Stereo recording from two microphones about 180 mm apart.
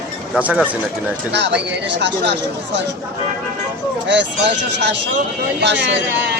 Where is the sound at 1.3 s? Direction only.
75° right (ahead or behind).